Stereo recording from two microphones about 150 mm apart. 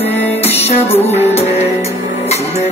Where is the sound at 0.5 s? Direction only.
45° left (ahead or behind).